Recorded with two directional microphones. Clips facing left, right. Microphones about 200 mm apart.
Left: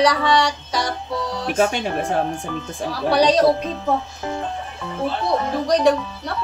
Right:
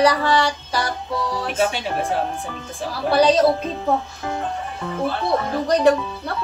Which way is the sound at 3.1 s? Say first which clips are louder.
Even; 5° right (ahead or behind).